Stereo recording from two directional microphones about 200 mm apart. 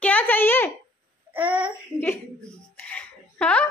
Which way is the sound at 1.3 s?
5° right (ahead or behind).